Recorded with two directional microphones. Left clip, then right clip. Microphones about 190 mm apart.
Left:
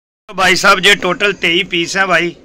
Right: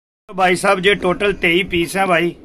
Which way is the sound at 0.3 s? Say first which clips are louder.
Left 5 dB; centre (ahead or behind).